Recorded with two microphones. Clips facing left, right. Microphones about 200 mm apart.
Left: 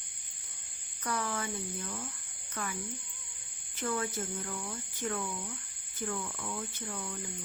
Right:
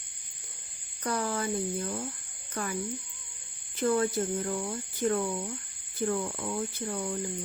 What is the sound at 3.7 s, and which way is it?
Speech, 35° right (ahead or behind).